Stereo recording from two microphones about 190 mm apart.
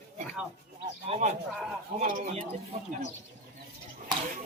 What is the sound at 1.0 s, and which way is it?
A man's voice, 35° right (ahead or behind).